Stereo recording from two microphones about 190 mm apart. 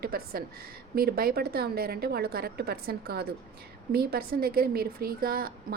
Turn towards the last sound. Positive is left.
turn(degrees=-50)  # may be behind; listen again after turning